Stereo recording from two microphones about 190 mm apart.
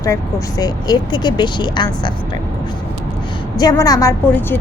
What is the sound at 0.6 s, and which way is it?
Speech, 20° left (ahead or behind).